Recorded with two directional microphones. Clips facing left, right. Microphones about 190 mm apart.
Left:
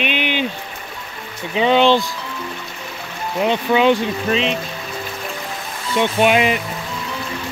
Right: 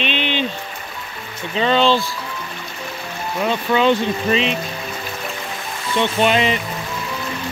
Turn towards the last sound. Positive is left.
turn(degrees=10)  # may be behind; listen again after turning